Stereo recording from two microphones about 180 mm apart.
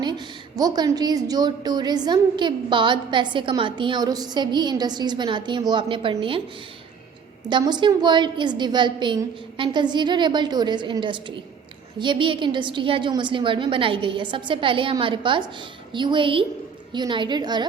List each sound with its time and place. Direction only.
0.0 s a woman's voice: 20° right (ahead or behind)
7.5 s a woman's voice: 25° right (ahead or behind)